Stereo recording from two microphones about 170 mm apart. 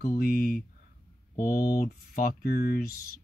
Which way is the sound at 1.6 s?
60° left (ahead or behind).